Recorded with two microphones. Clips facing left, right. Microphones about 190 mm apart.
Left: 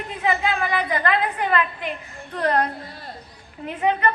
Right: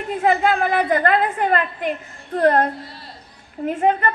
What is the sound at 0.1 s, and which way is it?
A woman's voice, 50° right (ahead or behind).